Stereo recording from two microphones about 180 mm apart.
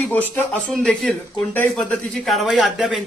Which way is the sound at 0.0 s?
10° left (ahead or behind).